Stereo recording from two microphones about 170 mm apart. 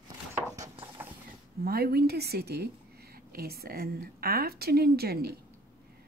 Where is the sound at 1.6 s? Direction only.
65° right (ahead or behind).